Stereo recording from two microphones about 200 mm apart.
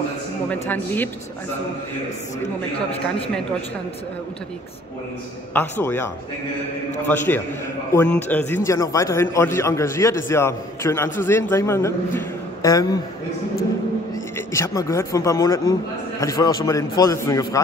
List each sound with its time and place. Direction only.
0.5 s a man's voice: 10° left (ahead or behind)
5.5 s a man's voice: 10° left (ahead or behind)
7.1 s a man's voice: 10° left (ahead or behind)
14.1 s a man's voice: 15° left (ahead or behind)